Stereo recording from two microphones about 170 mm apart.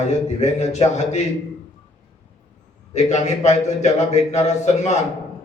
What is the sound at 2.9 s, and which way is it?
A man's voice, 40° left (ahead or behind).